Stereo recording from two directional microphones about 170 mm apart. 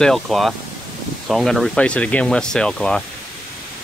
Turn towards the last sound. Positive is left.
turn(degrees=0)  # may be behind; listen again after turning